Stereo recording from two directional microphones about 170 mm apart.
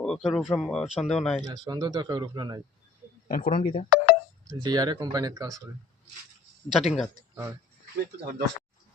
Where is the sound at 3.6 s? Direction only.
35° left (ahead or behind).